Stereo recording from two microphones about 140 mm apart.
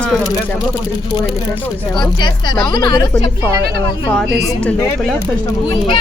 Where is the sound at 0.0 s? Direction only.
Centre (ahead or behind).